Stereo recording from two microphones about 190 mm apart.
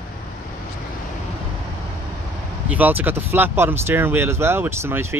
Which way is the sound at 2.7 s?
10° right (ahead or behind).